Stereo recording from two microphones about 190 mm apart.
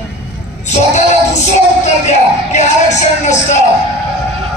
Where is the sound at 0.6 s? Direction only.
40° left (ahead or behind).